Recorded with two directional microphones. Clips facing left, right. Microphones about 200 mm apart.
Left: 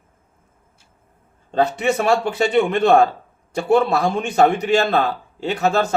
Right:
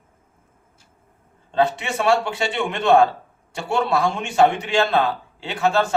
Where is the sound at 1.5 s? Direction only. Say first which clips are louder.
Left 3 dB; 45° left (ahead or behind).